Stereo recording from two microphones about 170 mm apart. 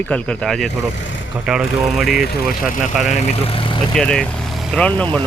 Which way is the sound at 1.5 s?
5° right (ahead or behind).